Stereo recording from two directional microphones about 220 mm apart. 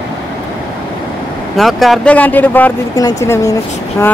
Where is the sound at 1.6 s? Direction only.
Centre (ahead or behind).